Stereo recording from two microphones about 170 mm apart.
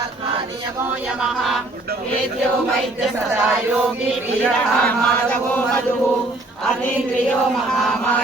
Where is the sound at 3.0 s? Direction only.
Centre (ahead or behind).